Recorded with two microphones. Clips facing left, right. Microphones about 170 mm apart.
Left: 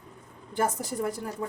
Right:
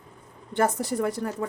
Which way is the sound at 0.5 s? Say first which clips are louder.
Right 4 dB; 70° right (ahead or behind).